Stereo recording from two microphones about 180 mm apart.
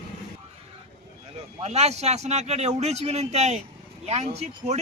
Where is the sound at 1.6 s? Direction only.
35° right (ahead or behind).